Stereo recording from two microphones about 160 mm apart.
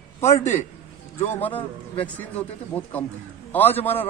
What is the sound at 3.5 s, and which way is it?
Speech, 10° left (ahead or behind).